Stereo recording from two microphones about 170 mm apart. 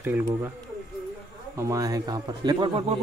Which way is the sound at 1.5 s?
20° right (ahead or behind).